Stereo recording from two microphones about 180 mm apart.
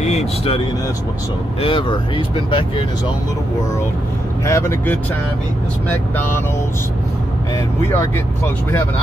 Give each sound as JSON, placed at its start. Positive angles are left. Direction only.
{"t": 0.0, "sound": "vehicle", "side_deg": 35}
{"t": 1.6, "sound": "speech", "side_deg": 30}
{"t": 4.5, "sound": "speech", "side_deg": 15}
{"t": 6.1, "sound": "speech", "side_deg": 10}